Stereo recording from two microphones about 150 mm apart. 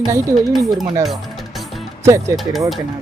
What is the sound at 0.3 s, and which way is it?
Speech, centre (ahead or behind).